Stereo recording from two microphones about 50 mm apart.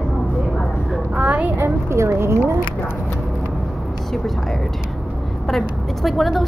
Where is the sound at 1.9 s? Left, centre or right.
Right.